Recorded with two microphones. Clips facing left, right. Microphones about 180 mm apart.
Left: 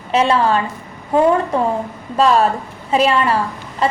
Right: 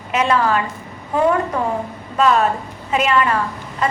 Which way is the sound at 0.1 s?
30° left (ahead or behind).